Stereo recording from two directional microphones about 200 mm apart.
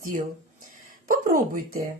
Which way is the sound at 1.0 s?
45° right (ahead or behind).